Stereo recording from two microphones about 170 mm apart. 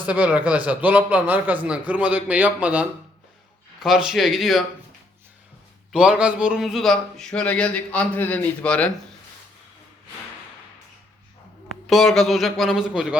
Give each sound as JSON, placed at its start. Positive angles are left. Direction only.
{"t": 0.0, "sound": "a man's voice", "side_deg": -10}
{"t": 5.9, "sound": "a man's voice", "side_deg": -5}
{"t": 11.9, "sound": "a man's voice", "side_deg": 0}